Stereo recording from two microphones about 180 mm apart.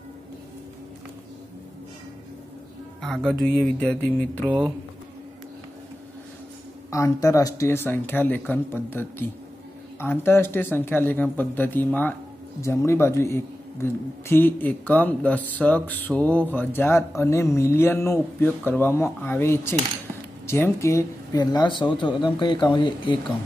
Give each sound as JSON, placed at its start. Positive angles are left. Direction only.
{"t": 3.0, "sound": "music", "side_deg": 0}
{"t": 4.5, "sound": "speech", "side_deg": -5}
{"t": 6.9, "sound": "a man's voice", "side_deg": 15}